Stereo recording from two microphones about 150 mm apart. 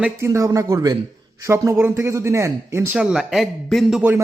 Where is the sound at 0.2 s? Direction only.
20° right (ahead or behind).